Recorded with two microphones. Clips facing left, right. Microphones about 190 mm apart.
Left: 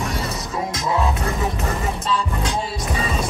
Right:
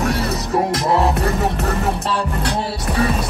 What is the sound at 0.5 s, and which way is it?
Music, 65° right (ahead or behind).